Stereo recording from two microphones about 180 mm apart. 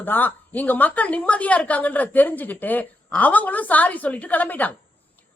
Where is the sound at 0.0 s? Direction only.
10° left (ahead or behind).